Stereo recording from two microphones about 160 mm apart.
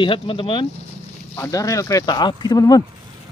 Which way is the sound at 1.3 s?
20° left (ahead or behind).